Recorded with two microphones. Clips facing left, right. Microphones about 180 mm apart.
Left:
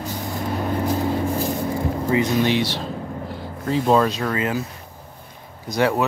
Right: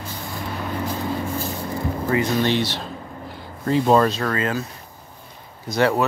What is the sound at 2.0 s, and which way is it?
Speech, 15° left (ahead or behind).